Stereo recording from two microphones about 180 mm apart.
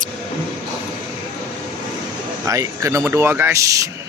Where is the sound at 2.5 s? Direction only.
15° right (ahead or behind).